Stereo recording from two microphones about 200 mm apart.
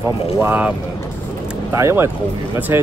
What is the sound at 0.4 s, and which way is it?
Speech, 10° right (ahead or behind).